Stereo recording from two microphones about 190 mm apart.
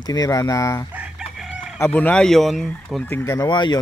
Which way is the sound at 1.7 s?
10° left (ahead or behind).